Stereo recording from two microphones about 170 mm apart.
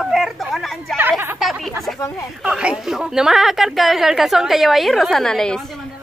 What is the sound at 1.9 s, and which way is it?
Speech, 20° left (ahead or behind).